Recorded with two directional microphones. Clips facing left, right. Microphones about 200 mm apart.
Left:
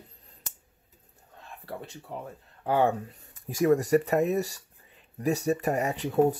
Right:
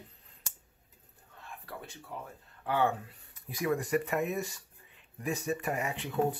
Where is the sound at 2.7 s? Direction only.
40° left (ahead or behind).